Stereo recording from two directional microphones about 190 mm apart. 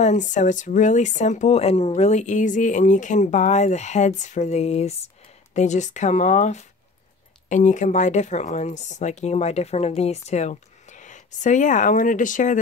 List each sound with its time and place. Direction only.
0.0 s speech: 40° left (ahead or behind)